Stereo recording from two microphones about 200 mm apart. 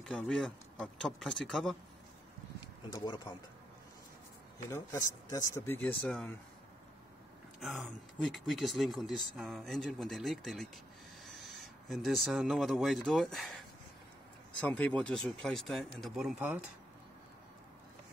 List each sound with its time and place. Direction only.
0.0 s speech: centre (ahead or behind)
2.9 s speech: 20° left (ahead or behind)
4.6 s speech: 15° left (ahead or behind)
7.6 s speech: centre (ahead or behind)
11.9 s speech: centre (ahead or behind)
14.6 s speech: 5° left (ahead or behind)